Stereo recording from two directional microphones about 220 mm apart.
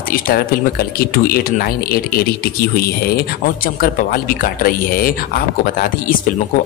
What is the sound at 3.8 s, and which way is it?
Speech, 40° left (ahead or behind).